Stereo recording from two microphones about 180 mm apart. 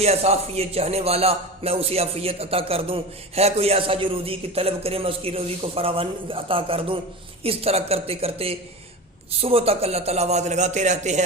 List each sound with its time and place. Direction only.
0.0 s speech: 35° right (ahead or behind)